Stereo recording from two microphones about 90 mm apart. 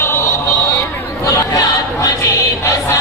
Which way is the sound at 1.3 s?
35° left (ahead or behind).